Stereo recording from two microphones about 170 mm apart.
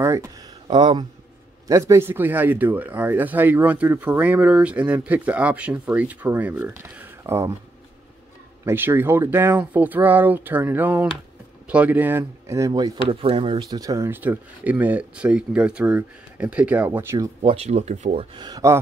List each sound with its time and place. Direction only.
0.0 s a sound: 15° right (ahead or behind)
1.7 s speech: 15° right (ahead or behind)
8.6 s speech: 10° right (ahead or behind)
13.1 s speech: 35° right (ahead or behind); by 17.3 s 15° right (ahead or behind)
17.4 s speech: 35° right (ahead or behind); by 18.8 s 20° right (ahead or behind)